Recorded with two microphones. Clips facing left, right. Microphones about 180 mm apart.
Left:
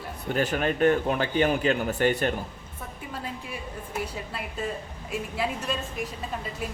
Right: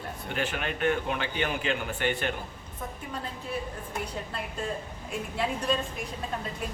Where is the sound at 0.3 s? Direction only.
40° left (ahead or behind).